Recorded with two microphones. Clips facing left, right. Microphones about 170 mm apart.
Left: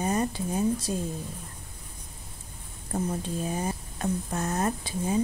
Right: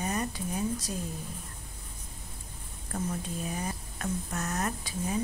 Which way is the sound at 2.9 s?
30° left (ahead or behind).